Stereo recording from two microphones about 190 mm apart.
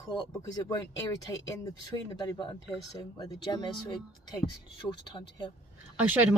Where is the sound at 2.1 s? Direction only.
20° left (ahead or behind).